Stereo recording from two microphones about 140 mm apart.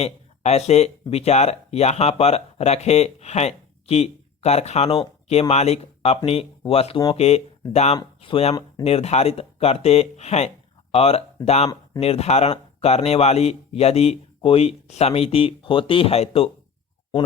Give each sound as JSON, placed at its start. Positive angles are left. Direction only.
{"t": 0.0, "sound": "speech", "side_deg": 50}